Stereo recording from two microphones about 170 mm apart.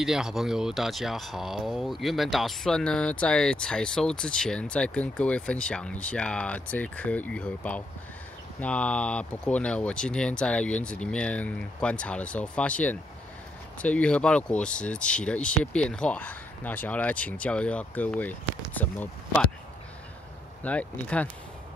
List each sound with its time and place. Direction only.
0.0 s speech: 5° right (ahead or behind)
20.6 s speech: 10° left (ahead or behind)